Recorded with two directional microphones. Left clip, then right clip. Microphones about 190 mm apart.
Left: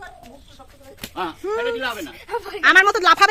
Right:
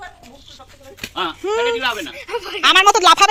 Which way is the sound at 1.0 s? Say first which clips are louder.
Right 4 dB; 15° right (ahead or behind).